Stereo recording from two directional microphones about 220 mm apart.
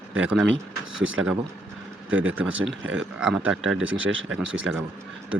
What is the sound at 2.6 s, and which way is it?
Speech, 60° right (ahead or behind).